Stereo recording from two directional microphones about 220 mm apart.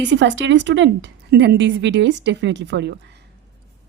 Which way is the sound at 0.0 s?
55° right (ahead or behind).